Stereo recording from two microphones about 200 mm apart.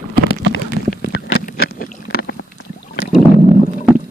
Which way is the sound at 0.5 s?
55° left (ahead or behind).